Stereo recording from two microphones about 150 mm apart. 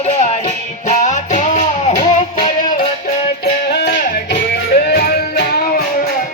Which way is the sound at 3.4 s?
90° left.